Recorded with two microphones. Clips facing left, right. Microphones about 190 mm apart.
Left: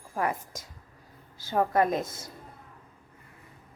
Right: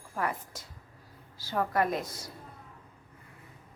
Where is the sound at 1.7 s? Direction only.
20° left (ahead or behind).